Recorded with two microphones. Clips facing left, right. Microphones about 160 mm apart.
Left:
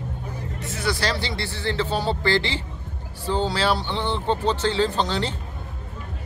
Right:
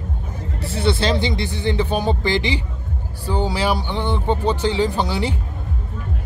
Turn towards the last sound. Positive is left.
turn(degrees=-10)  # may be behind; listen again after turning